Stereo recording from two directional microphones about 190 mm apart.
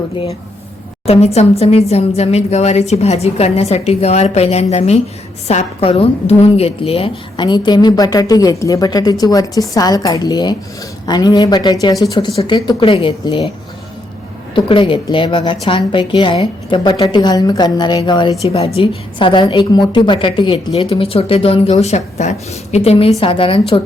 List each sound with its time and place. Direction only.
1.0 s a woman's voice: 35° left (ahead or behind)
14.5 s a woman's voice: 25° left (ahead or behind)